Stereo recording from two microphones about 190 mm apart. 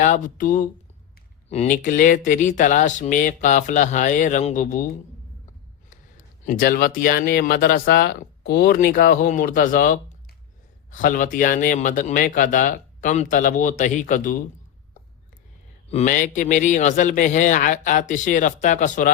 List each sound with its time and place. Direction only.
0.0 s speech: 40° left (ahead or behind)
5.9 s speech: 45° left (ahead or behind)
15.9 s speech: 35° left (ahead or behind)